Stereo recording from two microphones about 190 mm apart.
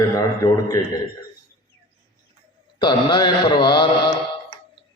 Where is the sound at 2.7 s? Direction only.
25° left (ahead or behind).